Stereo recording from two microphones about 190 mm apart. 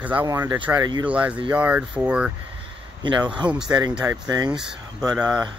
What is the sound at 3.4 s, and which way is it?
Speech, 5° right (ahead or behind).